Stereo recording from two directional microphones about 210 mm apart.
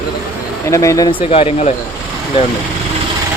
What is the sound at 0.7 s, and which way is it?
Speech, 15° left (ahead or behind).